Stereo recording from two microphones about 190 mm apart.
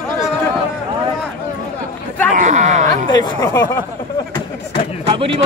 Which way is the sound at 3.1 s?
20° left (ahead or behind).